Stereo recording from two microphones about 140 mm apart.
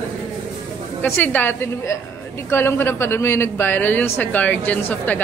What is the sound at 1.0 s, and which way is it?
A woman's voice, 15° left (ahead or behind).